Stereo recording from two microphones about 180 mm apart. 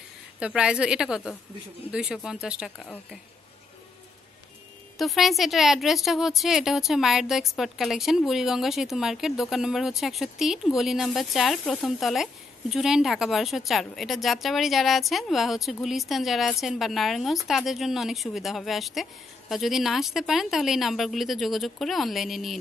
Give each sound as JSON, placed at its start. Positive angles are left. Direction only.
{"t": 0.4, "sound": "a woman's voice", "side_deg": -5}
{"t": 4.9, "sound": "a woman's voice", "side_deg": 0}